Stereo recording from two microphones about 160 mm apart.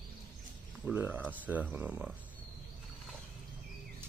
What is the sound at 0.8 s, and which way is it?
Speech, 10° right (ahead or behind).